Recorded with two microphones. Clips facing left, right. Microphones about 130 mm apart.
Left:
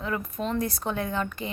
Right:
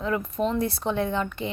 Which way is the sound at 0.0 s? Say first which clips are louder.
Right 4 dB; 20° right (ahead or behind).